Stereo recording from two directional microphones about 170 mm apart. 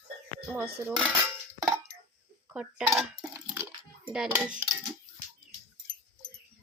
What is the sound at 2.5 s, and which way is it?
Speech, 5° right (ahead or behind).